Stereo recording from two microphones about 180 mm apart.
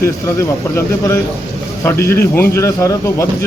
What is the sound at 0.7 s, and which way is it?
A man's voice, 15° left (ahead or behind).